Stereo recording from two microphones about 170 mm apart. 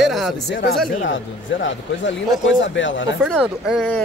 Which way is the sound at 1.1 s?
90° left.